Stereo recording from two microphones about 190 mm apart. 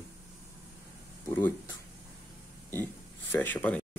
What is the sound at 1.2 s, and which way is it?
Speech, 15° left (ahead or behind).